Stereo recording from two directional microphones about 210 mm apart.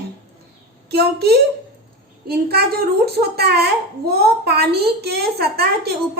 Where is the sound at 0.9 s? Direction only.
50° right (ahead or behind).